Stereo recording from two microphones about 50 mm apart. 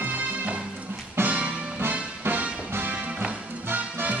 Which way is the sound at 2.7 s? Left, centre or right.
Right.